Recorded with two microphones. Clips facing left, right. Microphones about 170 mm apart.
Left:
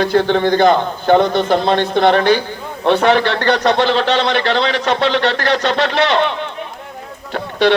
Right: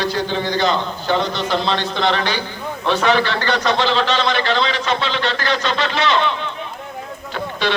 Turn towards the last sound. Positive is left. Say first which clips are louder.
# left 7 dB
turn(degrees=65)  # may be behind; listen again after turning